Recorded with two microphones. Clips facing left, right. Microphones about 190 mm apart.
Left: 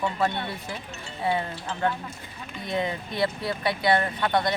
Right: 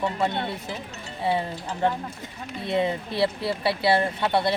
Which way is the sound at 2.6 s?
30° right (ahead or behind).